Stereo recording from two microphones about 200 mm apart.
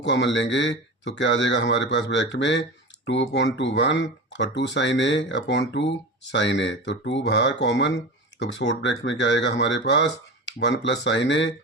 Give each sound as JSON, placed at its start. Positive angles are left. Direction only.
{"t": 0.0, "sound": "speech", "side_deg": 60}